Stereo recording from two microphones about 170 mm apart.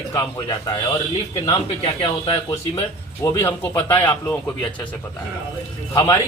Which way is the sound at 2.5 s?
15° left (ahead or behind).